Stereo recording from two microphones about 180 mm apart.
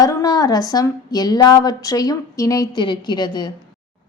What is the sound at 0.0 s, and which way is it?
A woman's voice, 20° left (ahead or behind).